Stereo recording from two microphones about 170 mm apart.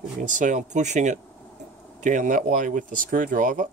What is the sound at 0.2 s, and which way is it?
Speech, 50° right (ahead or behind).